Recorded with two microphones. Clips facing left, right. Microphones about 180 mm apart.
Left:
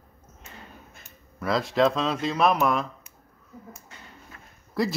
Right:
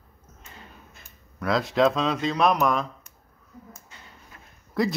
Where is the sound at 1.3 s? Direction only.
Centre (ahead or behind).